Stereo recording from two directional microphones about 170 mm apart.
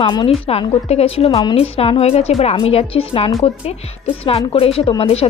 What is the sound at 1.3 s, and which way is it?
A woman's voice, 25° left (ahead or behind).